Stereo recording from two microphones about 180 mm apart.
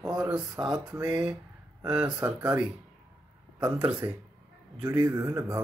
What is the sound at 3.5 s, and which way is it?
Speech, 20° right (ahead or behind).